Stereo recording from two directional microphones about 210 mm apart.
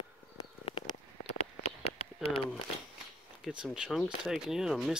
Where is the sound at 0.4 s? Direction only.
25° left (ahead or behind).